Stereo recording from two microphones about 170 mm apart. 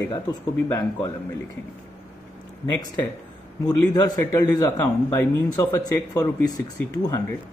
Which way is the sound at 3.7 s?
25° left (ahead or behind).